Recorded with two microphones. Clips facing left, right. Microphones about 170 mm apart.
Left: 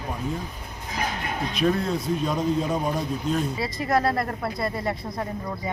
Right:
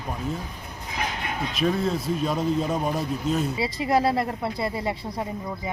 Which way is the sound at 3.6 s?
30° right (ahead or behind).